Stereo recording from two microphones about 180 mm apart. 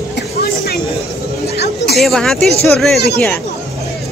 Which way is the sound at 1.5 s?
65° left (ahead or behind).